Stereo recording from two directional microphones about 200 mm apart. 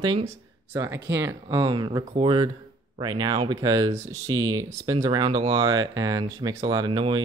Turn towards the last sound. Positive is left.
turn(degrees=-25)  # may be behind; listen again after turning